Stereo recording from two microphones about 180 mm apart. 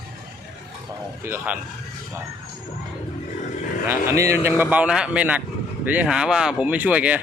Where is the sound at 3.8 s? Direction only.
15° right (ahead or behind).